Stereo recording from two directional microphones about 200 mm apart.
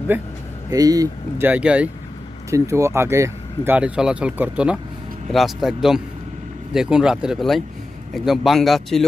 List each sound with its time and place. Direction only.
0.7 s speech: 15° right (ahead or behind)
1.5 s speech: 5° right (ahead or behind)